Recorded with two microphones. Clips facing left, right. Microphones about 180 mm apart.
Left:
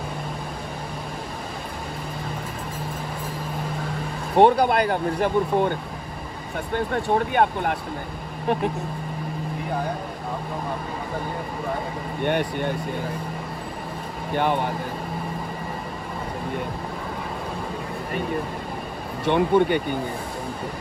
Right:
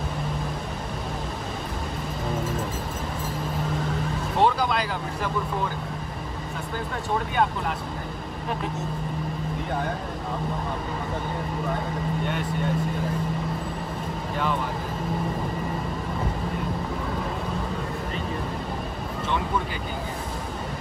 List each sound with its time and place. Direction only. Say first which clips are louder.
4.4 s speech: left 7 dB; 60° left (ahead or behind)
6.9 s speech: left 5 dB; 60° left (ahead or behind)
12.3 s speech: left 5 dB; 65° left (ahead or behind)
14.3 s speech: left 5 dB; 65° left (ahead or behind)
19.2 s speech: left 10 dB; 65° left (ahead or behind)